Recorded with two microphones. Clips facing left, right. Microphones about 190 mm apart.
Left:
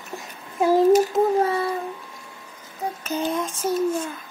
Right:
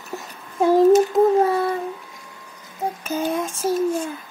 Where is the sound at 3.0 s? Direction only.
10° right (ahead or behind).